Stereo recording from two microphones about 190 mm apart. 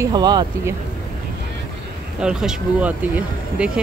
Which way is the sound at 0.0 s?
20° right (ahead or behind).